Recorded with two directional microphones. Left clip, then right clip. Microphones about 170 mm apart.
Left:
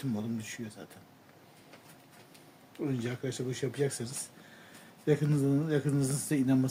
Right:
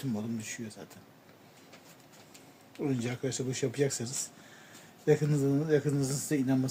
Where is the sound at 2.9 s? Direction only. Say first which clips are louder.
Right 2 dB; 20° right (ahead or behind).